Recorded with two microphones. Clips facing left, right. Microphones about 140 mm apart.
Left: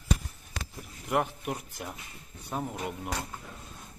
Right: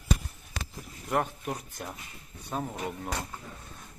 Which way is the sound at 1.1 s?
5° left (ahead or behind).